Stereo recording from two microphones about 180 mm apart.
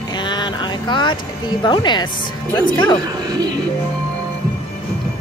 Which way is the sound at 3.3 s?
25° right (ahead or behind).